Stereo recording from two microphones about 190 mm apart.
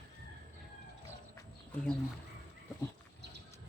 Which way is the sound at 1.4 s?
5° left (ahead or behind).